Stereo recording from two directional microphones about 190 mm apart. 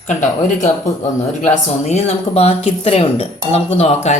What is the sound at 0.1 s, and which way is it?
Speech, 40° left (ahead or behind).